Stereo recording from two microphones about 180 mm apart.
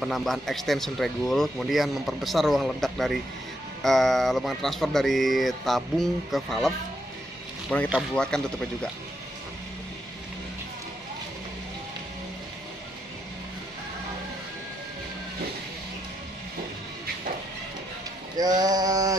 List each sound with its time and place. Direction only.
0.0 s speech: centre (ahead or behind)
7.7 s speech: 5° left (ahead or behind)
18.4 s a sound: 20° right (ahead or behind)